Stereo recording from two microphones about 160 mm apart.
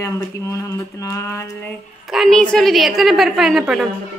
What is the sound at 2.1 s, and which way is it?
A woman's voice, centre (ahead or behind).